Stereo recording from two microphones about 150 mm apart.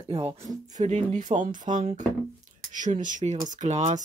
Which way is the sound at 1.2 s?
60° right (ahead or behind).